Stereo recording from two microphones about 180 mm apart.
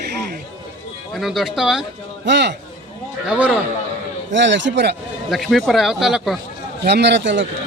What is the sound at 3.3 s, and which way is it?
Speech, 10° right (ahead or behind).